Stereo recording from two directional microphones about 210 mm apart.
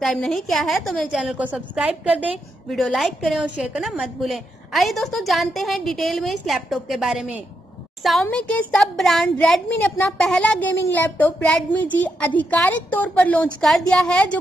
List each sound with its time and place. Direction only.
0.0 s a woman's voice: centre (ahead or behind)